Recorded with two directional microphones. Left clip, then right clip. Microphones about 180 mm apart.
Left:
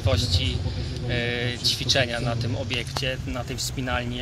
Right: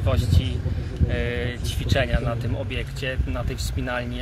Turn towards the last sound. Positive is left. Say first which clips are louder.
# even
turn(degrees=-15)  # may be behind; listen again after turning